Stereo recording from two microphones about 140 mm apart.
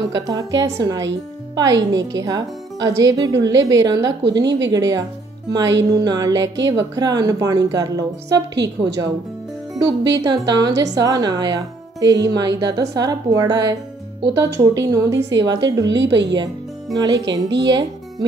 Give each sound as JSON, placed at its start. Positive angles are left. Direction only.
{"t": 0.1, "sound": "a woman's voice", "side_deg": -25}
{"t": 9.8, "sound": "a woman's voice", "side_deg": -25}
{"t": 16.9, "sound": "a woman's voice", "side_deg": -30}